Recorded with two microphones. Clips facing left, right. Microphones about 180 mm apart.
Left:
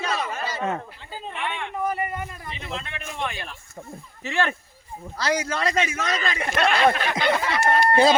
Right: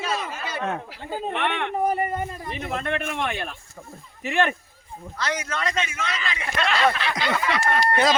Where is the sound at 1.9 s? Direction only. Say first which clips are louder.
Right 4 dB; 35° right (ahead or behind).